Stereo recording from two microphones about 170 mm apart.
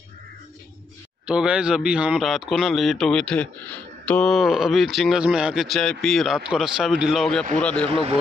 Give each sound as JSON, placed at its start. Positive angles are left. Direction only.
{"t": 1.2, "sound": "speech", "side_deg": -5}
{"t": 7.9, "sound": "speech", "side_deg": -35}